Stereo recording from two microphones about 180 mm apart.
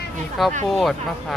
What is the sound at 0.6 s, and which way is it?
Speech, centre (ahead or behind).